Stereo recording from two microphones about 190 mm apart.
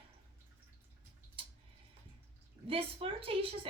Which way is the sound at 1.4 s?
30° right (ahead or behind).